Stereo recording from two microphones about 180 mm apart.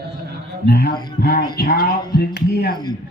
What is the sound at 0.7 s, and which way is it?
Speech, 60° left (ahead or behind).